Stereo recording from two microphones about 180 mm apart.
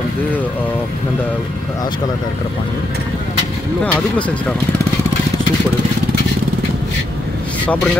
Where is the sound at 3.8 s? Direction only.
5° left (ahead or behind).